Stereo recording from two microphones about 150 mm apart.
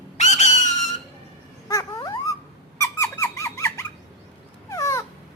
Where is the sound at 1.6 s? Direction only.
20° left (ahead or behind).